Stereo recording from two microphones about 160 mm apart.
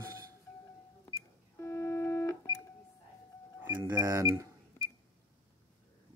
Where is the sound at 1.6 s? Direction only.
15° left (ahead or behind).